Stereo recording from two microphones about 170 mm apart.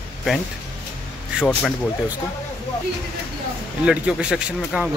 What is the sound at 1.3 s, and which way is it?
Speech, 5° right (ahead or behind).